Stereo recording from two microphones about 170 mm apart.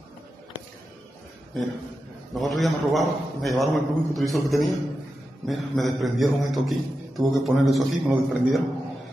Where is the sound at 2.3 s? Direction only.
Centre (ahead or behind).